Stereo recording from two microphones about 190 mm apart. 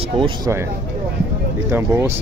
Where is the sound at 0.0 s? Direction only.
30° right (ahead or behind).